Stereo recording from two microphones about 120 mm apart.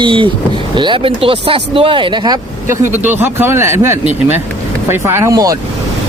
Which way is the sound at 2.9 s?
15° right (ahead or behind).